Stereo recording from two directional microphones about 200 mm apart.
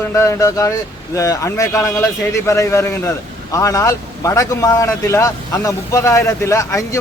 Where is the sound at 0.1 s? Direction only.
15° left (ahead or behind).